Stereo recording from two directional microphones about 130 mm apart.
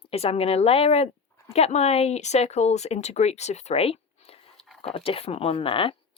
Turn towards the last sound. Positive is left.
turn(degrees=45)  # may be behind; listen again after turning